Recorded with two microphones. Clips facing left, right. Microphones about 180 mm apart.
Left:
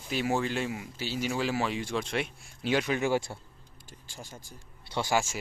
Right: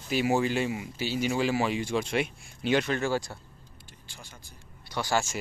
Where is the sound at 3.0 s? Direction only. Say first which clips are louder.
Left 1 dB; 20° left (ahead or behind).